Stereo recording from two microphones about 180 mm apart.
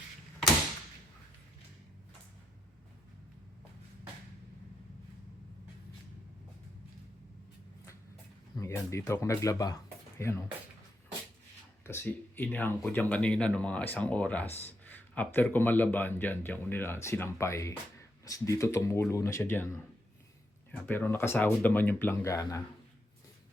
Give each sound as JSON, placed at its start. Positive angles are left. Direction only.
{"t": 8.5, "sound": "speech", "side_deg": 15}
{"t": 11.9, "sound": "speech", "side_deg": 10}